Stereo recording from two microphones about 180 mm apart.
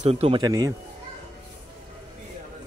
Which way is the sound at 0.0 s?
35° right (ahead or behind).